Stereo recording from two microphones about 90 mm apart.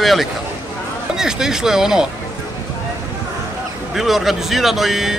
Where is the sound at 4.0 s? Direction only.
Centre (ahead or behind).